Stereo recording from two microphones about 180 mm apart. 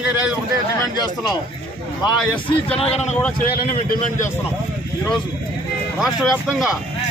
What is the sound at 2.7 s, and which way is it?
Speech, 35° left (ahead or behind).